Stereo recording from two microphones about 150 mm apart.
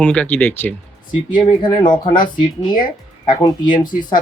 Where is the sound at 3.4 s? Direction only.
30° left (ahead or behind).